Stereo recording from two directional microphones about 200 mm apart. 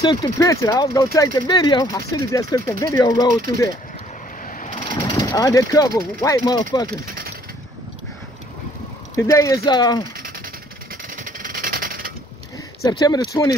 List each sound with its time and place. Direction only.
0.0 s speech: 20° left (ahead or behind)
4.5 s vehicle: 40° left (ahead or behind)
5.0 s speech: 15° left (ahead or behind)
9.1 s speech: 15° left (ahead or behind)
11.1 s a sound: 40° right (ahead or behind)
13.0 s speech: 20° left (ahead or behind)